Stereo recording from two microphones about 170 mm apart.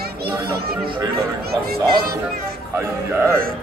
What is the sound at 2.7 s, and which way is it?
Speech, 15° right (ahead or behind).